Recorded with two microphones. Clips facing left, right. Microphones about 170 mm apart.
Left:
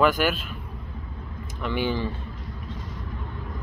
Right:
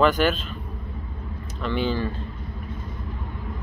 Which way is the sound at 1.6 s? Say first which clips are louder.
Right 1 dB; 15° left (ahead or behind).